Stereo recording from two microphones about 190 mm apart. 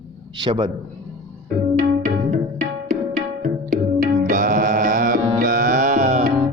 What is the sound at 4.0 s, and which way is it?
Music, 50° right (ahead or behind).